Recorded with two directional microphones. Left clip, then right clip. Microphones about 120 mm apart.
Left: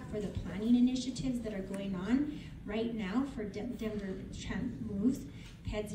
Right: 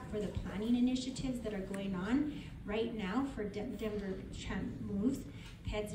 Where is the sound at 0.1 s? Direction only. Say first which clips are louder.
Even; 20° right (ahead or behind).